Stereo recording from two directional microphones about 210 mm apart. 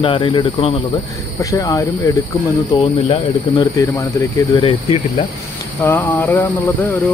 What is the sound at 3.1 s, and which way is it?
Speech, 20° left (ahead or behind).